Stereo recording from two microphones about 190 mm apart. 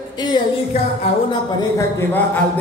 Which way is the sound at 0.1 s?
20° left (ahead or behind).